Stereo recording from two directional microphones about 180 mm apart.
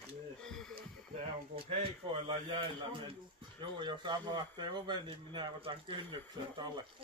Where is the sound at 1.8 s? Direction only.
30° right (ahead or behind).